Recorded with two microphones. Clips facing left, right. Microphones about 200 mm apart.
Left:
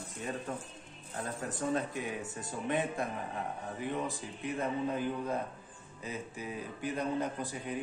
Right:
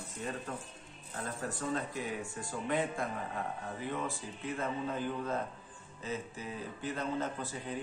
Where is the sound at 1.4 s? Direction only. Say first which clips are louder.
Left 3 dB; 20° left (ahead or behind).